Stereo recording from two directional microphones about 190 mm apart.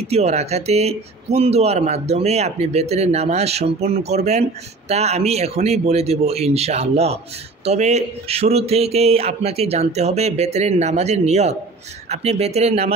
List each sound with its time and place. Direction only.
0.0 s speech: 35° right (ahead or behind)